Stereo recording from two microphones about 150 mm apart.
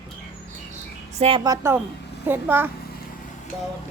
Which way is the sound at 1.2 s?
40° right (ahead or behind).